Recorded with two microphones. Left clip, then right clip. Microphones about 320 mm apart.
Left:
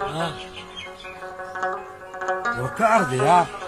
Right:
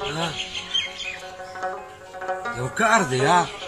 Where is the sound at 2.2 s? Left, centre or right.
Left.